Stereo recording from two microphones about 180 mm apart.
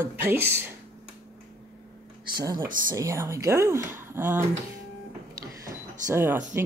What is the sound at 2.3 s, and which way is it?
Speech, 20° right (ahead or behind).